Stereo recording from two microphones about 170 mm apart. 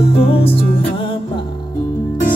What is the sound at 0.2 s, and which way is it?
Music, 35° left (ahead or behind).